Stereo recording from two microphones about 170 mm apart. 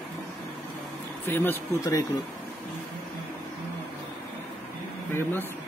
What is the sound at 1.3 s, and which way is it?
Speech, 15° left (ahead or behind).